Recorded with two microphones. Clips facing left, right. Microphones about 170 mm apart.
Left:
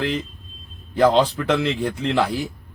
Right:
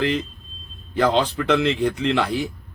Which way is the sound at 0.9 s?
5° left (ahead or behind).